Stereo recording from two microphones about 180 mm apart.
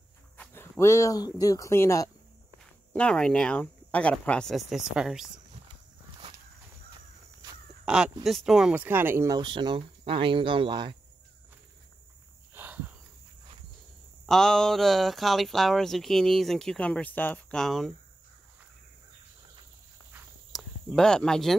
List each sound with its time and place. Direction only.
0.4 s a sound: 15° left (ahead or behind)
1.4 s speech: 20° left (ahead or behind); by 5.3 s 5° right (ahead or behind)
7.8 s speech: 5° right (ahead or behind)
9.4 s speech: 25° right (ahead or behind)
12.5 s cricket: 10° right (ahead or behind)
14.2 s speech: centre (ahead or behind)
20.5 s speech: 5° left (ahead or behind)